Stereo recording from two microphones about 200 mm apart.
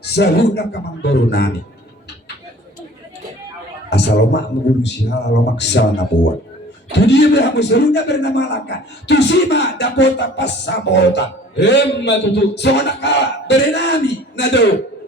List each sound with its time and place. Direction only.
0.0 s a man's voice: 55° left (ahead or behind)
3.8 s a man's voice: 55° left (ahead or behind)